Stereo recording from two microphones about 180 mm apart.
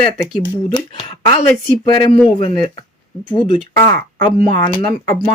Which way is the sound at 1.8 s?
25° left (ahead or behind).